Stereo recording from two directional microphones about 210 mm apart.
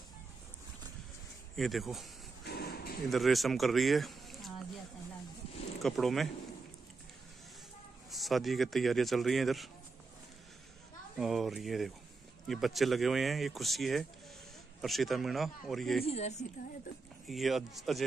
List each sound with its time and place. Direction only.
1.6 s speech: centre (ahead or behind)
2.4 s a sound: 50° left (ahead or behind)
3.1 s speech: centre (ahead or behind)
5.8 s speech: centre (ahead or behind)
8.1 s speech: centre (ahead or behind)
11.1 s speech: centre (ahead or behind)
16.1 s speech: 30° left (ahead or behind)
17.3 s speech: centre (ahead or behind)